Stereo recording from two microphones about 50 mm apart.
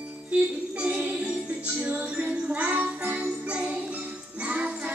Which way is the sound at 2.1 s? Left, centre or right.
Right.